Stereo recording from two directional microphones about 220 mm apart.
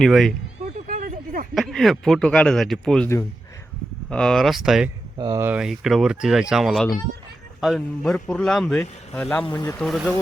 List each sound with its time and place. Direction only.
0.0 s speech: centre (ahead or behind)
0.9 s a sound: 35° right (ahead or behind)
1.5 s speech: centre (ahead or behind)
5.1 s speech: 20° right (ahead or behind); by 9.5 s 5° left (ahead or behind)
9.5 s speech: 15° left (ahead or behind)
9.8 s speech: centre (ahead or behind)